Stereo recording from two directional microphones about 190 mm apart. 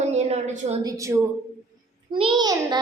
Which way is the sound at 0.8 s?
15° right (ahead or behind).